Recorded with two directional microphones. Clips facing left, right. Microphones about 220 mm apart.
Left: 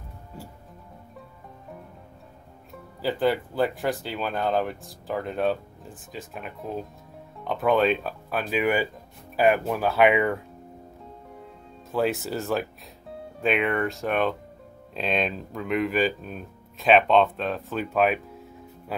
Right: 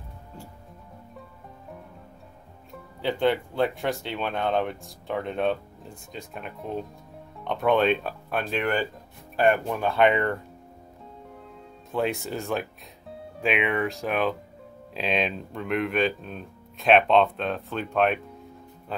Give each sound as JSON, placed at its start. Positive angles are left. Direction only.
{"t": 2.7, "sound": "speech", "side_deg": 5}
{"t": 11.9, "sound": "speech", "side_deg": 0}